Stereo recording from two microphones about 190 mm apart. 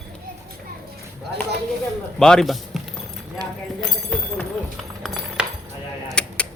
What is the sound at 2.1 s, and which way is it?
Speech, 5° left (ahead or behind).